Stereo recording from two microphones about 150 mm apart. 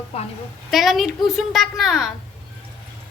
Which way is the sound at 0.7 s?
Centre (ahead or behind).